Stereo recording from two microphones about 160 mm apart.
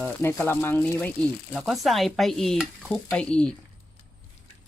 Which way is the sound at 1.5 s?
Centre (ahead or behind).